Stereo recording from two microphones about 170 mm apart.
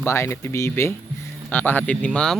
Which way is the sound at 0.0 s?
15° left (ahead or behind).